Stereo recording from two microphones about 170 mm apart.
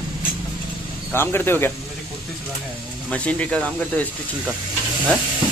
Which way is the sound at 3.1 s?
10° left (ahead or behind).